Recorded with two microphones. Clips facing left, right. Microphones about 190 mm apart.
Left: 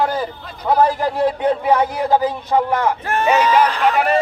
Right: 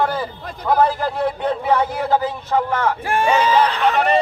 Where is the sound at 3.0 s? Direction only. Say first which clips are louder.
Even; 10° right (ahead or behind).